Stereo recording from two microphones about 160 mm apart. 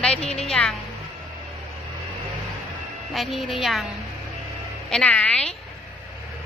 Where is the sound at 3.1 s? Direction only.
Centre (ahead or behind).